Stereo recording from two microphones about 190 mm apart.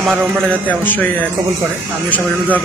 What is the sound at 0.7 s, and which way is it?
Speech, 10° left (ahead or behind).